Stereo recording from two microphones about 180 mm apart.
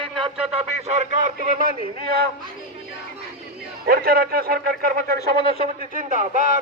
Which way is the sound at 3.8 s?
55° right (ahead or behind).